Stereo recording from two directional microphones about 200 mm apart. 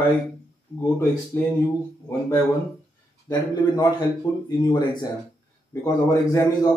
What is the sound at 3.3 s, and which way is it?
A man's voice, 20° left (ahead or behind).